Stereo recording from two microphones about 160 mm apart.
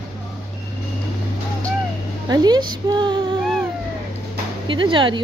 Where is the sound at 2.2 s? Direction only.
25° right (ahead or behind).